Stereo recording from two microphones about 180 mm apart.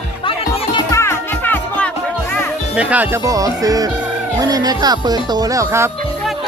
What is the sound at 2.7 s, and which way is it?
Speech, 10° right (ahead or behind).